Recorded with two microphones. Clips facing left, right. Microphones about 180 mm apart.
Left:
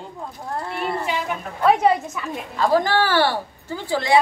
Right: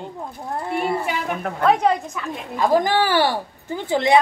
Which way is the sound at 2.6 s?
15° right (ahead or behind).